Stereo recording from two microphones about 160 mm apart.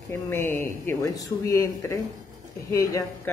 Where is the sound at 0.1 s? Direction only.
15° left (ahead or behind).